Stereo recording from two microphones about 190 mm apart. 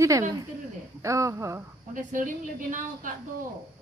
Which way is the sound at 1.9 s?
45° right (ahead or behind).